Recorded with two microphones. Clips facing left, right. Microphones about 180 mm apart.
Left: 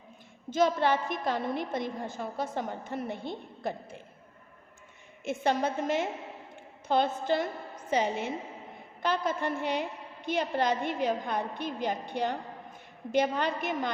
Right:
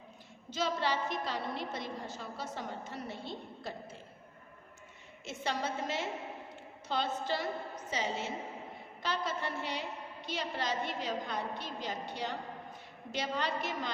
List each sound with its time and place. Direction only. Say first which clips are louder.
0.5 s a woman's voice: left 8 dB; 50° left (ahead or behind)
5.2 s a woman's voice: left 8 dB; 55° left (ahead or behind)